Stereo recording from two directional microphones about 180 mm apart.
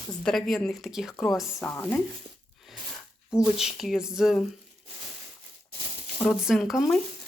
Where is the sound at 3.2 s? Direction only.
5° right (ahead or behind).